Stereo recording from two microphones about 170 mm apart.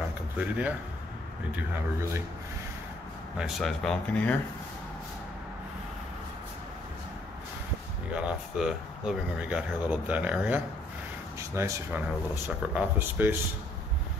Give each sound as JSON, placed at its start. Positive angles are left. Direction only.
{"t": 0.4, "sound": "speech", "side_deg": -10}
{"t": 3.3, "sound": "speech", "side_deg": 0}
{"t": 8.1, "sound": "speech", "side_deg": -5}